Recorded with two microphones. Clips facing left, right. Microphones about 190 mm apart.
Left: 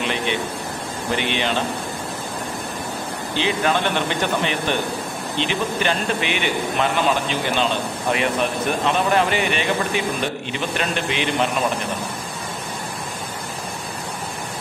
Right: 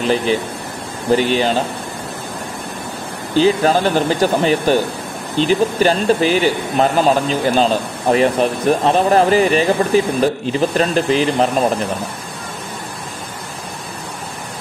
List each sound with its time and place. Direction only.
0.0 s speech: 35° right (ahead or behind)
3.3 s speech: 40° right (ahead or behind)